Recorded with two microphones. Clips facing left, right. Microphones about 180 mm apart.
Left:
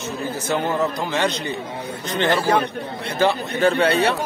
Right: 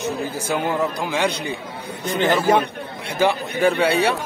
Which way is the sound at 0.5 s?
10° right (ahead or behind).